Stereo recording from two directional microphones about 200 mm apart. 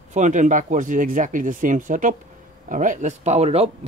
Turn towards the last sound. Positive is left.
turn(degrees=-30)  # may be behind; listen again after turning